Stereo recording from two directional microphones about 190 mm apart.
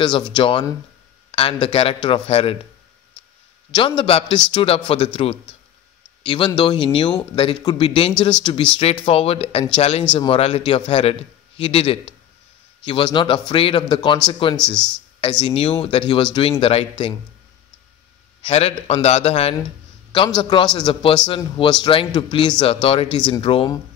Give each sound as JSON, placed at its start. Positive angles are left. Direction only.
{"t": 0.0, "sound": "a man's voice", "side_deg": 25}
{"t": 3.7, "sound": "a man's voice", "side_deg": 25}
{"t": 18.4, "sound": "a man's voice", "side_deg": 35}
{"t": 20.1, "sound": "a sound", "side_deg": 20}
{"t": 20.4, "sound": "a man's voice", "side_deg": 25}